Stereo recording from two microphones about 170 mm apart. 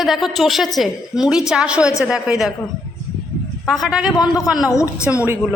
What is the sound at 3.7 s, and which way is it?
Speech, centre (ahead or behind).